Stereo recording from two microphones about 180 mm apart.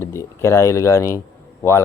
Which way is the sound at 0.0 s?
15° left (ahead or behind).